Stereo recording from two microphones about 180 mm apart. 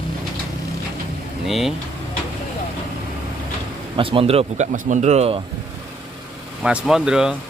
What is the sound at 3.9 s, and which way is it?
Speech, 30° right (ahead or behind).